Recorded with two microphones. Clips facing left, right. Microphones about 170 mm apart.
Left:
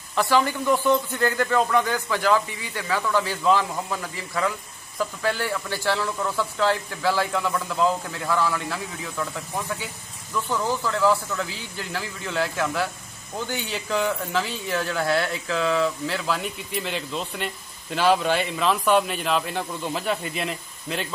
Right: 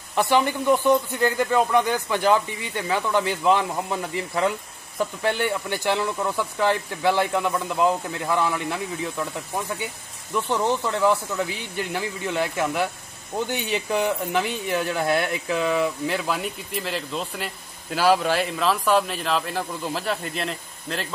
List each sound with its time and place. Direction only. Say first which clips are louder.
0.1 s a man's voice: right 1 dB; 20° right (ahead or behind)
10.3 s a man's voice: right 3 dB; 25° right (ahead or behind); by 21.1 s 5° left (ahead or behind)